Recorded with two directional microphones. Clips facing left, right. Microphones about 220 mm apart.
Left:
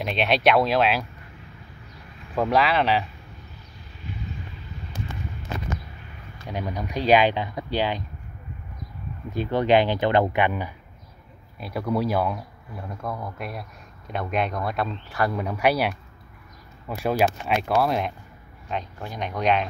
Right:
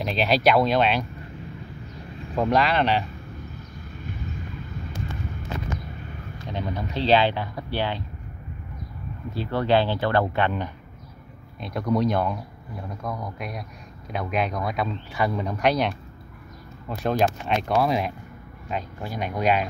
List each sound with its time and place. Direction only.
0.0 s speech: centre (ahead or behind)
2.3 s speech: centre (ahead or behind)
6.5 s speech: 15° left (ahead or behind)
9.3 s speech: 20° left (ahead or behind)
17.0 s speech: 5° left (ahead or behind)